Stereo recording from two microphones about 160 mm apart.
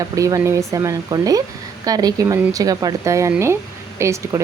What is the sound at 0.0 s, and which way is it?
Speech, 20° right (ahead or behind).